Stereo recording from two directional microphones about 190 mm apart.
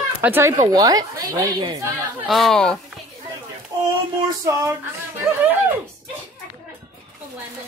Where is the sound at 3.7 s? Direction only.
20° right (ahead or behind).